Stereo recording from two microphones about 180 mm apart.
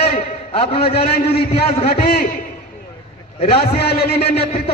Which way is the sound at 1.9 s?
55° left (ahead or behind).